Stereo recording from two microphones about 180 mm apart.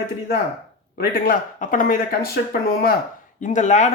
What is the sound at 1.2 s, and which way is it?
Speech, 50° left (ahead or behind).